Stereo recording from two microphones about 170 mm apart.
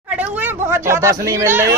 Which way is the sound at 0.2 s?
10° right (ahead or behind).